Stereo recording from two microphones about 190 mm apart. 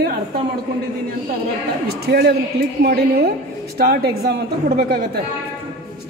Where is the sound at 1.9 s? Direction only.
55° right (ahead or behind).